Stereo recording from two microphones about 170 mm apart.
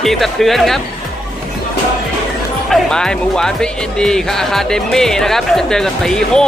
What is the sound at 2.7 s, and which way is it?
Speech, 5° left (ahead or behind).